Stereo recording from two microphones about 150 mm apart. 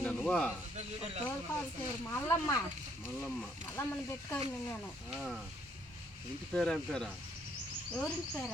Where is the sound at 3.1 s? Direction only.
5° left (ahead or behind).